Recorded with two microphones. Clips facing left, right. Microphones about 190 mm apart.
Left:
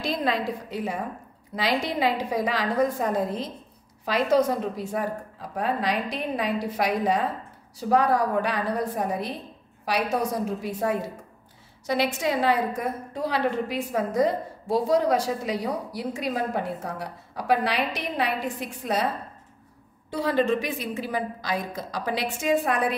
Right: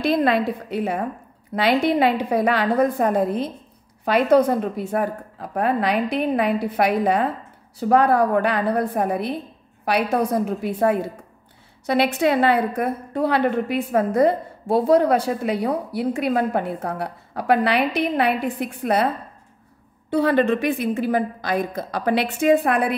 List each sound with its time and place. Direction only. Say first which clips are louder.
0.0 s a woman's voice: right 7 dB; 60° right (ahead or behind)
20.1 s a woman's voice: right 5 dB; 60° right (ahead or behind)